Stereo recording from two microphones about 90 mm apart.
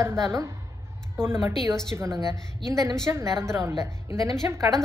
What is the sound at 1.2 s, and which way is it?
Speech, 25° right (ahead or behind).